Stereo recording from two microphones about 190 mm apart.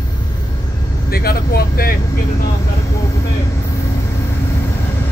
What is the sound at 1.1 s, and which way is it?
Speech, 55° left (ahead or behind).